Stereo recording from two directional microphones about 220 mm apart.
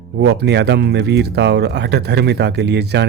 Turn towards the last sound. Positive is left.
turn(degrees=-50)  # may be behind; listen again after turning